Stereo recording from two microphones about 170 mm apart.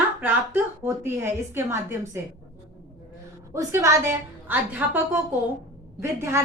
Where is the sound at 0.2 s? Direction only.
10° right (ahead or behind).